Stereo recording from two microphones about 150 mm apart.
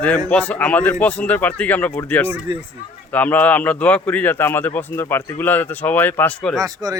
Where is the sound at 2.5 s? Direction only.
30° right (ahead or behind).